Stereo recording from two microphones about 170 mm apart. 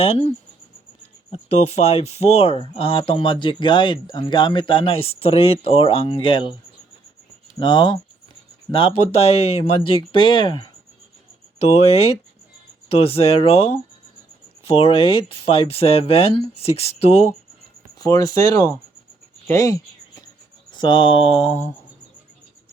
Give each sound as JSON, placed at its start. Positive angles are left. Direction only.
{"t": 0.0, "sound": "speech", "side_deg": 35}
{"t": 7.6, "sound": "speech", "side_deg": 25}
{"t": 11.7, "sound": "speech", "side_deg": 35}
{"t": 18.0, "sound": "speech", "side_deg": 20}